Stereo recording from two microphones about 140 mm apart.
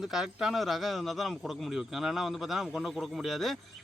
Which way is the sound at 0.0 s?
5° right (ahead or behind).